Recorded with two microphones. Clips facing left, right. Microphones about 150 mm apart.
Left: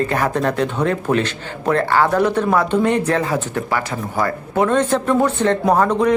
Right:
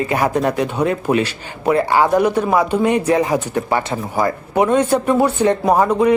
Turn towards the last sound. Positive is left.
turn(degrees=-10)  # may be behind; listen again after turning